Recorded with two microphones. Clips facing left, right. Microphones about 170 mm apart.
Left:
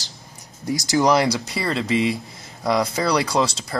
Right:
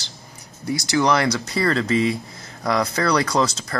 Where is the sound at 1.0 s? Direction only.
10° left (ahead or behind).